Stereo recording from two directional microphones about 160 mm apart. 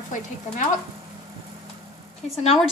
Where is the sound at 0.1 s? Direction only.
50° left (ahead or behind).